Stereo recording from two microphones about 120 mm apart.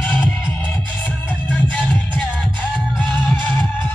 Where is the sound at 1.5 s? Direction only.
10° left (ahead or behind).